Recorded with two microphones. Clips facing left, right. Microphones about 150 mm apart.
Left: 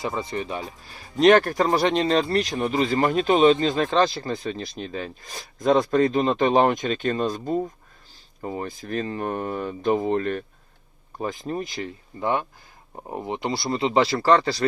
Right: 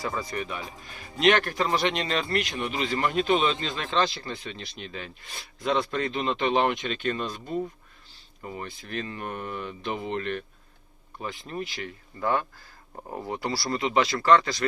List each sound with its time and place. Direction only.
0.0 s speech: 25° left (ahead or behind)
12.2 s speech: 20° left (ahead or behind)